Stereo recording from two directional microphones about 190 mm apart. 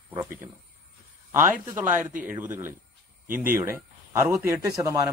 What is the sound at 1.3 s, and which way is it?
A man's voice, 10° right (ahead or behind).